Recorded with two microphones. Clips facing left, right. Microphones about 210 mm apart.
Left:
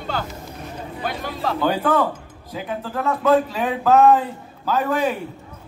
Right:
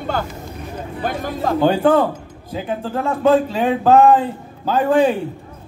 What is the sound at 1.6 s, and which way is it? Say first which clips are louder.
A man's voice: right 5 dB; 30° right (ahead or behind).